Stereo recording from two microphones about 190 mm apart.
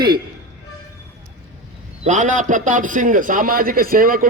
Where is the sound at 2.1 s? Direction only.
40° right (ahead or behind).